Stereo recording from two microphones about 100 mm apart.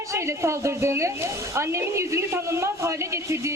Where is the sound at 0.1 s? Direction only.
30° right (ahead or behind).